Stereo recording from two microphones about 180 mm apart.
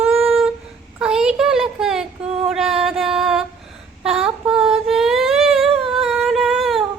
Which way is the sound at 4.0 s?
5° right (ahead or behind).